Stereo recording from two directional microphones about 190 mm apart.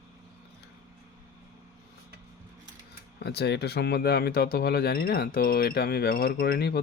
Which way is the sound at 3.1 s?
60° left (ahead or behind).